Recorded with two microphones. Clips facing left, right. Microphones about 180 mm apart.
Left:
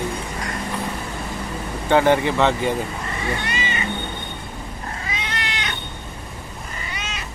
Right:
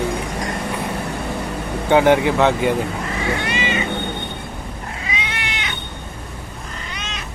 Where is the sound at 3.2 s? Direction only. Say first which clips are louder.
Right 4 dB; 85° right.